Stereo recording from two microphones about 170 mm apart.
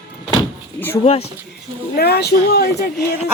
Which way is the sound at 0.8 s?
10° left (ahead or behind).